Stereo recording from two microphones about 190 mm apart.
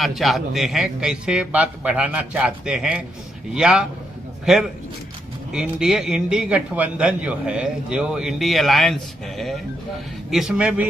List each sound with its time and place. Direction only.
0.0 s a man's voice: centre (ahead or behind)